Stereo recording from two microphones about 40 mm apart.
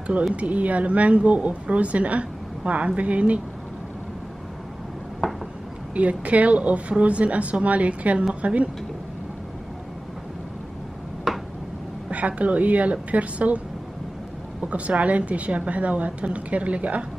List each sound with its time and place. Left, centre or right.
0.3 s a woman's voice: right
5.2 s a sound: centre
5.9 s a woman's voice: right
11.3 s a sound: centre
12.1 s a woman's voice: right
14.6 s a woman's voice: right